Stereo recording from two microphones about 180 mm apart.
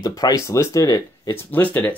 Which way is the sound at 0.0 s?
20° left (ahead or behind).